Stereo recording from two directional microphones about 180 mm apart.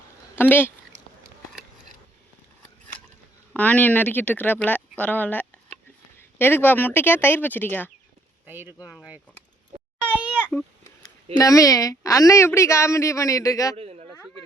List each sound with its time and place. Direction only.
0.3 s speech: 10° left (ahead or behind)
3.5 s a woman's voice: 10° left (ahead or behind)
8.4 s speech: 10° right (ahead or behind)
10.1 s a sound: 10° right (ahead or behind)
11.3 s a woman's voice: 20° left (ahead or behind)
13.7 s a sound: 35° right (ahead or behind)